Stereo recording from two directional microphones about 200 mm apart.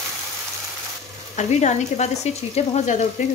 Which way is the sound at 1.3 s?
35° left (ahead or behind).